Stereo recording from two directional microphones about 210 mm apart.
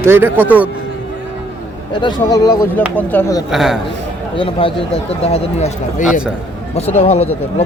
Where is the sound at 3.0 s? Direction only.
10° left (ahead or behind).